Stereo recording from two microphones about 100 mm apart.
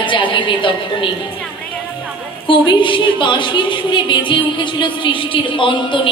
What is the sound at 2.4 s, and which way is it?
A woman's voice, 55° left (ahead or behind).